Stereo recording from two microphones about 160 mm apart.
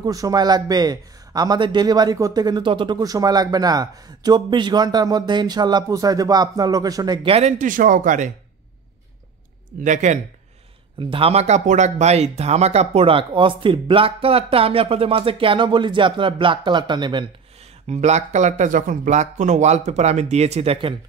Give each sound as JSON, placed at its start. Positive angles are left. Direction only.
{"t": 0.0, "sound": "speech", "side_deg": -20}
{"t": 7.2, "sound": "speech", "side_deg": -40}
{"t": 9.8, "sound": "speech", "side_deg": -50}
{"t": 11.0, "sound": "speech", "side_deg": -35}
{"t": 17.8, "sound": "speech", "side_deg": -45}